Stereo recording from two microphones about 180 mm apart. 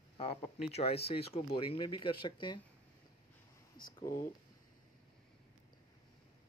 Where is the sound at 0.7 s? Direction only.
35° left (ahead or behind).